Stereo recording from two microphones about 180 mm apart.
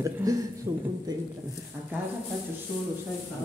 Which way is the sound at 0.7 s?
15° right (ahead or behind).